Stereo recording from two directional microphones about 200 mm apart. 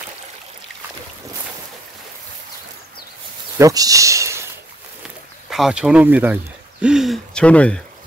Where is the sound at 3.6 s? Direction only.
15° right (ahead or behind).